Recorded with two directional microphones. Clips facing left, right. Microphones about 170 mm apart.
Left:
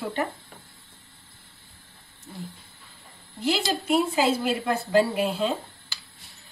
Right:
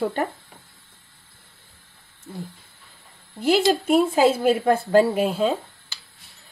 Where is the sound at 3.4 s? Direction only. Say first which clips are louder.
Right 7 dB; 50° right (ahead or behind).